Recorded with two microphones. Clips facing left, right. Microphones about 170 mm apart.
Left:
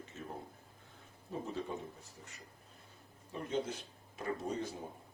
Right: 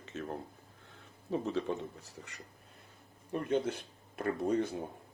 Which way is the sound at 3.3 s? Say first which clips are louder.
Right 6 dB; 60° right (ahead or behind).